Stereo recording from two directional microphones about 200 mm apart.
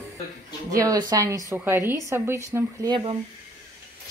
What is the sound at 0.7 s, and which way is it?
A man's voice, 20° right (ahead or behind).